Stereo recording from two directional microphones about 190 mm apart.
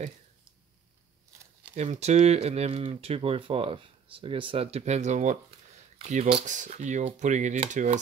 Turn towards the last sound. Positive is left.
turn(degrees=-40)  # may be behind; listen again after turning